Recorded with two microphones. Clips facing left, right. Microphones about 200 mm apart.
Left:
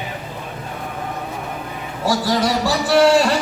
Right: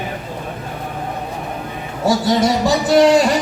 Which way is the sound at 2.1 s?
25° right (ahead or behind).